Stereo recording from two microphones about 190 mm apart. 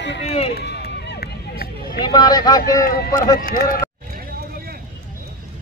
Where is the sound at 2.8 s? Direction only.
50° left (ahead or behind).